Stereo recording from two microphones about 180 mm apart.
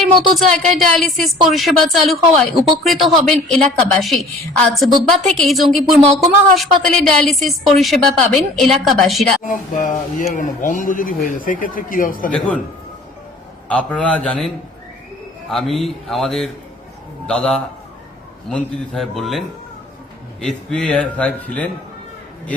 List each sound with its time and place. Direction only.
0.0 s speech: centre (ahead or behind)
9.5 s speech: 45° left (ahead or behind)
13.7 s a man's voice: 5° left (ahead or behind)